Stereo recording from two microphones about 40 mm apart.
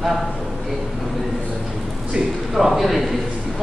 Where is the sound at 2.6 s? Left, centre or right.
Centre.